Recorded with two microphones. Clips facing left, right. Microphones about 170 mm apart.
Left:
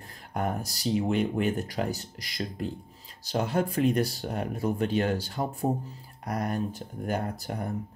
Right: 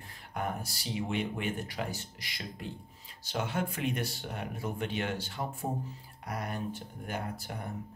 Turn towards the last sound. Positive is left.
turn(degrees=40)  # may be behind; listen again after turning